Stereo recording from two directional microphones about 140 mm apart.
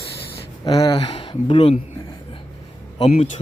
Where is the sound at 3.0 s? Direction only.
50° left (ahead or behind).